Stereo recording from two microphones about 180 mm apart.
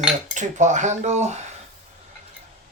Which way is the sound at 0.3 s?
40° right (ahead or behind).